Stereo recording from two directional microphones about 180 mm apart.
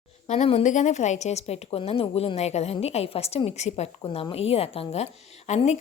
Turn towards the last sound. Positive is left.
turn(degrees=40)  # may be behind; listen again after turning